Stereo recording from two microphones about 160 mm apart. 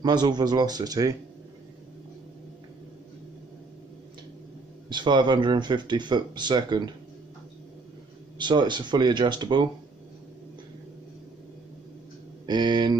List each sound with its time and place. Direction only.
0.0 s speech: 25° right (ahead or behind)
4.8 s speech: 30° right (ahead or behind)
8.4 s speech: 30° right (ahead or behind)
12.4 s speech: 25° right (ahead or behind)